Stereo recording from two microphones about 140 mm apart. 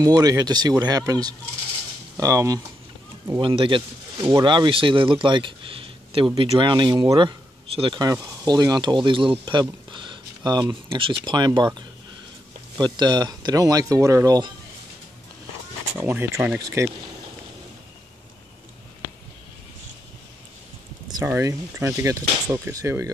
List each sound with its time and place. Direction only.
0.0 s speech: 25° right (ahead or behind)
3.3 s speech: 40° right (ahead or behind)
16.0 s speech: 15° right (ahead or behind)
21.1 s speech: 20° right (ahead or behind)